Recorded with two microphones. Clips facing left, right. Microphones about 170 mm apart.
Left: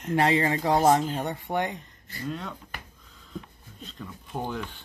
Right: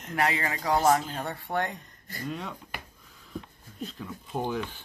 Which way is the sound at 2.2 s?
5° right (ahead or behind).